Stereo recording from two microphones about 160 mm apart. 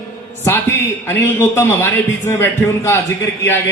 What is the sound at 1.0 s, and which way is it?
A man's voice, 15° left (ahead or behind).